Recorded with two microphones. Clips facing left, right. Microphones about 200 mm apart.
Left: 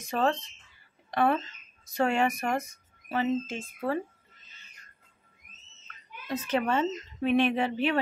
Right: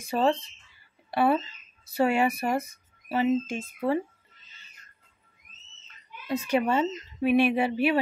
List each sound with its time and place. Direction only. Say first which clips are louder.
0.0 s speech: right 3 dB; 10° right (ahead or behind)
5.4 s a sound: left 1 dB; 55° left (ahead or behind)
6.2 s speech: right 3 dB; 10° right (ahead or behind)